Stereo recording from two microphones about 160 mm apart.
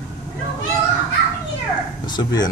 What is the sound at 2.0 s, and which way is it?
Speech, 25° left (ahead or behind).